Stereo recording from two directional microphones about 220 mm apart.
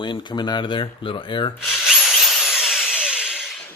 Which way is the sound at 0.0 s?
20° left (ahead or behind).